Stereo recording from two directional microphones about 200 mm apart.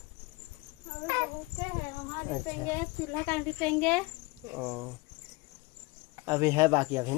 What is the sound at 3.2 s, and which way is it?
Speech, 10° left (ahead or behind).